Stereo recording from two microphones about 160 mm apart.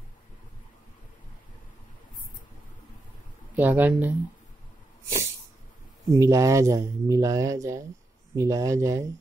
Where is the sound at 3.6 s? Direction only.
10° right (ahead or behind).